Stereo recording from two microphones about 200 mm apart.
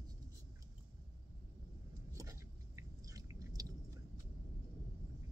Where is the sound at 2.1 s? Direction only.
15° right (ahead or behind).